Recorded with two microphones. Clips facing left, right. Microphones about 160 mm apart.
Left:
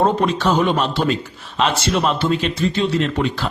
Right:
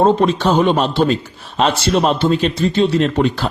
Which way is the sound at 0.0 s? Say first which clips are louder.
Right 4 dB; 25° right (ahead or behind).